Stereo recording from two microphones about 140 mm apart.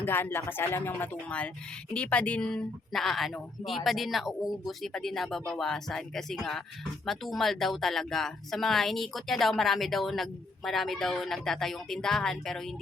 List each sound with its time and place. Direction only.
0.0 s a woman's voice: 15° left (ahead or behind)